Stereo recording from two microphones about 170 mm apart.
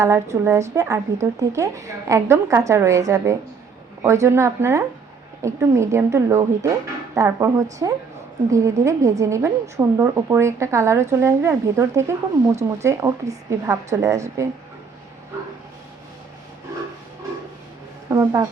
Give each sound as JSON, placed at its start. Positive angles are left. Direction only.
{"t": 0.0, "sound": "a woman's voice", "side_deg": -15}
{"t": 18.1, "sound": "speech", "side_deg": -20}